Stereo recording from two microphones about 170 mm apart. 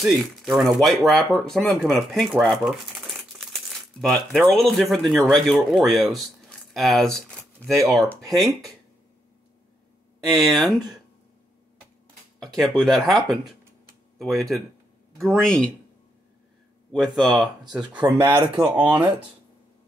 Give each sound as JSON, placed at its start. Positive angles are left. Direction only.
{"t": 0.0, "sound": "speech", "side_deg": 0}
{"t": 10.2, "sound": "speech", "side_deg": 0}
{"t": 12.4, "sound": "speech", "side_deg": 0}
{"t": 16.9, "sound": "speech", "side_deg": 0}
{"t": 18.0, "sound": "speech", "side_deg": -25}